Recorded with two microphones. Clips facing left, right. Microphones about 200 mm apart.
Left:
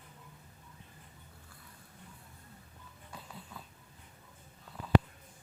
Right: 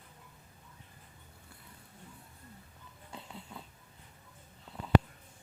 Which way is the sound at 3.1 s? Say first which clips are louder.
Right 2 dB; 25° right (ahead or behind).